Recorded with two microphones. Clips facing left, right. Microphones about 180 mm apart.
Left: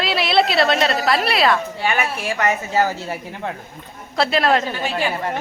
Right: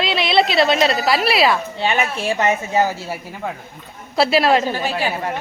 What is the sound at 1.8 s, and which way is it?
Speech, 25° right (ahead or behind).